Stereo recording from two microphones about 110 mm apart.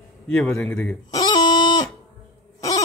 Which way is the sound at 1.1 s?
35° left (ahead or behind).